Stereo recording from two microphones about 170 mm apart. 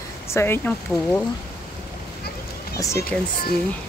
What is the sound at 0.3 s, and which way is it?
Speech, 15° left (ahead or behind).